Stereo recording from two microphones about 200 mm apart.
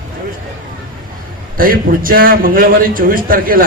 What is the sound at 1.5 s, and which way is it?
A man's voice, 45° right (ahead or behind).